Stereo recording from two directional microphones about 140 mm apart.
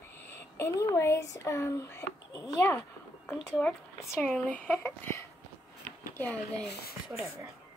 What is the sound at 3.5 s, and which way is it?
Speech, centre (ahead or behind).